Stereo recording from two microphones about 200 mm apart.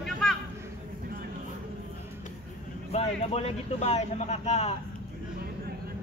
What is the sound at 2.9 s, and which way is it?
Speech, 30° left (ahead or behind).